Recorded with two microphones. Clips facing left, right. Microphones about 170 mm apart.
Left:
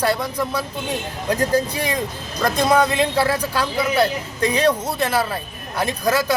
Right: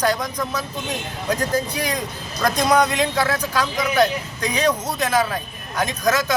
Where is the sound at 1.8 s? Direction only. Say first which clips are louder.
Left 2 dB; 5° left (ahead or behind).